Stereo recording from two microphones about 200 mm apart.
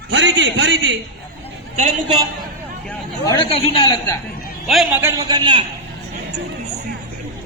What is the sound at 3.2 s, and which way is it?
Speech, 15° left (ahead or behind).